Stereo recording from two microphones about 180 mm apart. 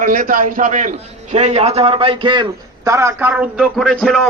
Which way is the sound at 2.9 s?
15° right (ahead or behind).